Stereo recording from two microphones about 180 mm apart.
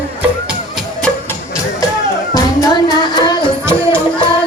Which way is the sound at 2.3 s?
20° left (ahead or behind).